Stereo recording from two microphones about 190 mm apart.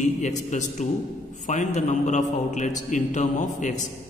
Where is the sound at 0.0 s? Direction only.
40° left (ahead or behind).